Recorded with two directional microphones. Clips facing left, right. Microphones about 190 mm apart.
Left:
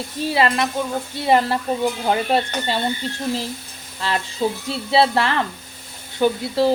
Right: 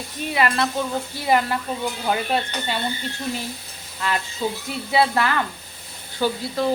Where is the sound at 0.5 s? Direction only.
15° left (ahead or behind); by 2.8 s 35° left (ahead or behind).